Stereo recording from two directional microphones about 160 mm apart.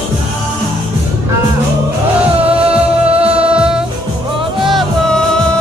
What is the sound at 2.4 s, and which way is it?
Music, 35° right (ahead or behind).